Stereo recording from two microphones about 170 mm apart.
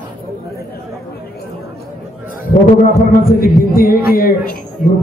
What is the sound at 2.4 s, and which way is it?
A man's voice, 55° left (ahead or behind).